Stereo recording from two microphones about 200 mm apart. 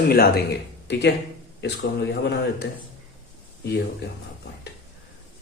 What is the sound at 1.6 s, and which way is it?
Speech, 55° left (ahead or behind).